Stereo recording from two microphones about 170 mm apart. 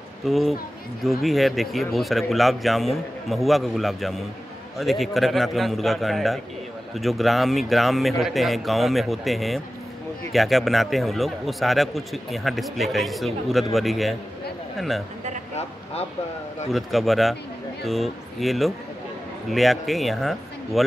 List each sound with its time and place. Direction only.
0.2 s a man's voice: centre (ahead or behind)
15.5 s a sound: 35° left (ahead or behind)
16.7 s a man's voice: centre (ahead or behind)